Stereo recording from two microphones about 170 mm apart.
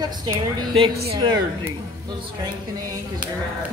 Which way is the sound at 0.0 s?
25° right (ahead or behind).